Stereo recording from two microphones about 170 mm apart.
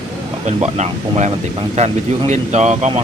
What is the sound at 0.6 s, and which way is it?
Speech, 40° right (ahead or behind).